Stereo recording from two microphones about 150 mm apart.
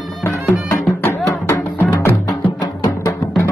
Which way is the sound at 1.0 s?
15° left (ahead or behind).